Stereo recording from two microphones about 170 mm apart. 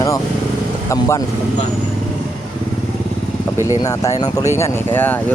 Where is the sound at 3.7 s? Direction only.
20° left (ahead or behind).